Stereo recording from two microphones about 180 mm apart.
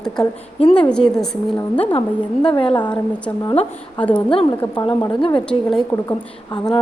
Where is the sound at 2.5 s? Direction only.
25° left (ahead or behind).